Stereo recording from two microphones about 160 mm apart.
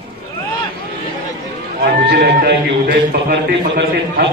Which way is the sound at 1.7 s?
85° right.